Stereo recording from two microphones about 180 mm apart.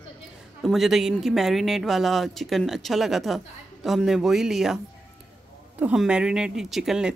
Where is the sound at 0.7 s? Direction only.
Centre (ahead or behind).